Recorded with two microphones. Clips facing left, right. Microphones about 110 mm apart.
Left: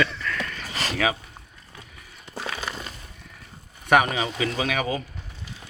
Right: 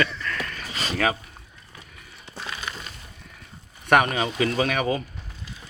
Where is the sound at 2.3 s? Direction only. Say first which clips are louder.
Left 3 dB; 80° left.